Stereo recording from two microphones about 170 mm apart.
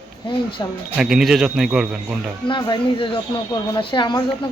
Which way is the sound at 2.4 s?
30° left (ahead or behind).